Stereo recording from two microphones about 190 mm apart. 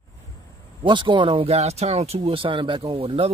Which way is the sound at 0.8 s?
25° right (ahead or behind).